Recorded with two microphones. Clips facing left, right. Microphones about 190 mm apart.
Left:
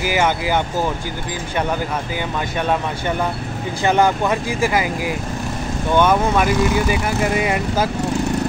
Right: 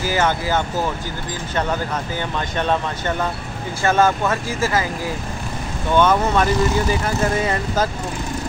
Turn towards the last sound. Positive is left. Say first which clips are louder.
# left 1 dB
turn(degrees=15)  # may be behind; listen again after turning